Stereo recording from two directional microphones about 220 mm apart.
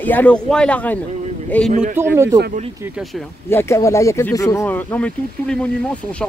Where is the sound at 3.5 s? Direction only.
10° left (ahead or behind).